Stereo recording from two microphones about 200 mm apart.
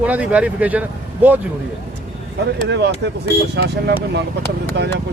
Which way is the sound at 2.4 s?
60° right (ahead or behind).